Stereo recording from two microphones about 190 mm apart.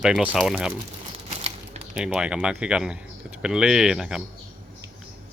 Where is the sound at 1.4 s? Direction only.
35° right (ahead or behind).